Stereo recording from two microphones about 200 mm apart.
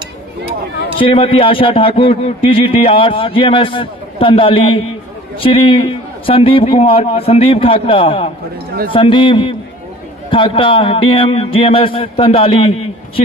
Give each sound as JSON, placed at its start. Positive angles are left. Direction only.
{"t": 0.9, "sound": "a man's voice", "side_deg": 25}